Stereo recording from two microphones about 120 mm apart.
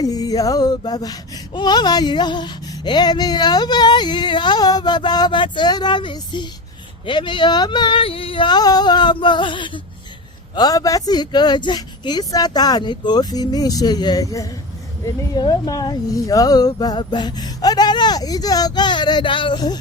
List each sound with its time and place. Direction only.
0.0 s speech: 30° left (ahead or behind)
10.5 s speech: 30° left (ahead or behind)